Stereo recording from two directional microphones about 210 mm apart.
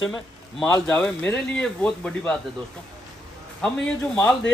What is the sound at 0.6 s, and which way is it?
Speech, 5° left (ahead or behind).